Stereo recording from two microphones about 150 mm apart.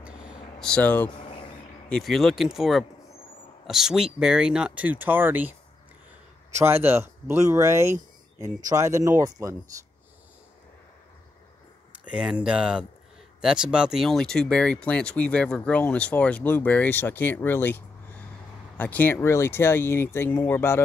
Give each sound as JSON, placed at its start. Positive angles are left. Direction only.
{"t": 0.0, "sound": "a sound", "side_deg": -5}
{"t": 0.6, "sound": "speech", "side_deg": 5}
{"t": 6.6, "sound": "speech", "side_deg": -15}
{"t": 12.1, "sound": "speech", "side_deg": -5}